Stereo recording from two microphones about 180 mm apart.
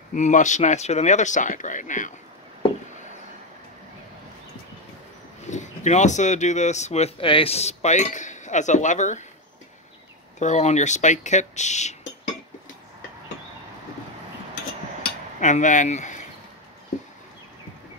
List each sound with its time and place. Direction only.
0.1 s speech: 45° left (ahead or behind)
5.4 s speech: 40° left (ahead or behind)
10.4 s speech: 40° left (ahead or behind)
15.4 s speech: 45° left (ahead or behind)